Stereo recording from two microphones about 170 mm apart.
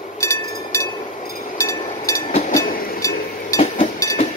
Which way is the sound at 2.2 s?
50° left (ahead or behind).